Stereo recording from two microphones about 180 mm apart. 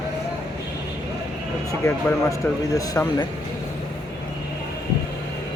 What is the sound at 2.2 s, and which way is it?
Speech, 20° left (ahead or behind).